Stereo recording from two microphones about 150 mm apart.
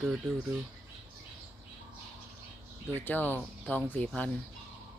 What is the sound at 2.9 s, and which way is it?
Speech, 10° left (ahead or behind).